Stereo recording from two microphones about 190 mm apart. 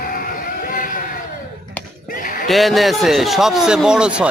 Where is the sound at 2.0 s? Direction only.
45° left (ahead or behind).